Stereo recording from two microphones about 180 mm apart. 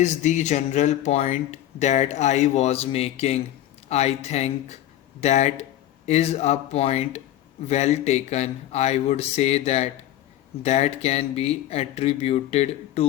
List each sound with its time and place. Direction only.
0.0 s speech: 40° left (ahead or behind)